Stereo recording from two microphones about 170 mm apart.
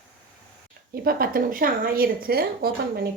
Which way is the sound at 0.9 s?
60° right (ahead or behind).